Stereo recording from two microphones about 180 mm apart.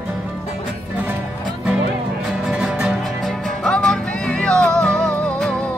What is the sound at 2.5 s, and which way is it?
Music, 5° right (ahead or behind).